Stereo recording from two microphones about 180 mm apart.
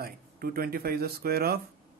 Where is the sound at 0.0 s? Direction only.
55° right (ahead or behind).